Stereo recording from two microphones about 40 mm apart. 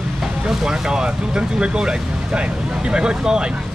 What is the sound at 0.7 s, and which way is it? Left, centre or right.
Speech, centre.